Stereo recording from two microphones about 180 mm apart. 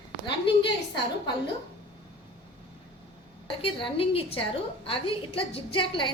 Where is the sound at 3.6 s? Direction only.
30° left (ahead or behind).